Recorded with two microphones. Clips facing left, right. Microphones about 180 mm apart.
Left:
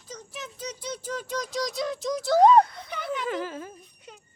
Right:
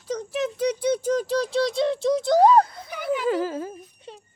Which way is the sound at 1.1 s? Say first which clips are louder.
Right 9 dB; 35° right (ahead or behind).